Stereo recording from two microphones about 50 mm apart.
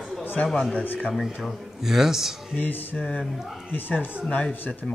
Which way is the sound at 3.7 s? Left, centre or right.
Left.